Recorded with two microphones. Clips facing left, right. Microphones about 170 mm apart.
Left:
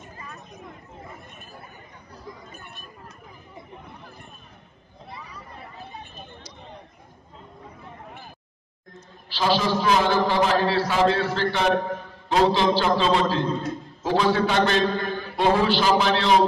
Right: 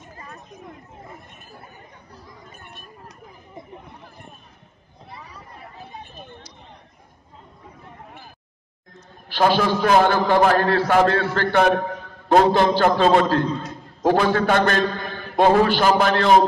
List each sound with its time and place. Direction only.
9.3 s a man's voice: 50° right (ahead or behind)